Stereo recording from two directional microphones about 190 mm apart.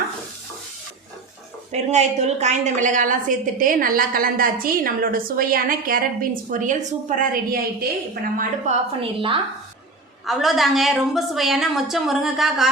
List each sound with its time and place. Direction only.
1.7 s a woman's voice: 35° right (ahead or behind)
9.0 s a woman's voice: 25° right (ahead or behind)
10.2 s a woman's voice: centre (ahead or behind)